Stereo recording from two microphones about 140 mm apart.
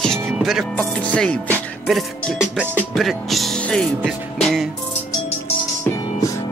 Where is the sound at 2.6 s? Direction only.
10° left (ahead or behind).